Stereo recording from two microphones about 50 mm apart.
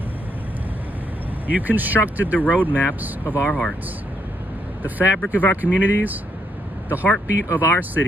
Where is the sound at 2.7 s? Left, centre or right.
Left.